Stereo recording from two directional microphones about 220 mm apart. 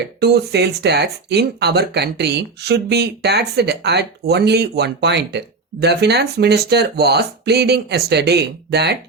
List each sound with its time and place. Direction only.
0.2 s speech: 50° right (ahead or behind)